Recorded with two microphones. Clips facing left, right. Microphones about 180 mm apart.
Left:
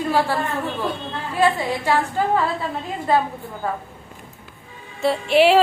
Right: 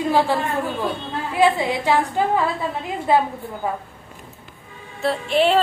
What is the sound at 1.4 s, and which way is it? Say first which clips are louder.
A woman's voice: right 2 dB; 10° right (ahead or behind).